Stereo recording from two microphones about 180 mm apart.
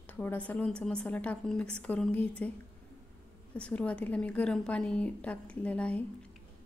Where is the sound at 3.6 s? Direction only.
5° left (ahead or behind).